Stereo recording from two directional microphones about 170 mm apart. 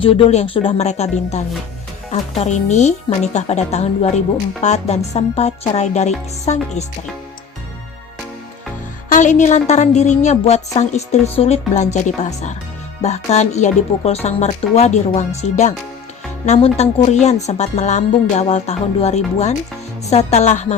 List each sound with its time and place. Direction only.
0.0 s a woman's voice: 35° left (ahead or behind)
9.1 s a woman's voice: 45° left (ahead or behind)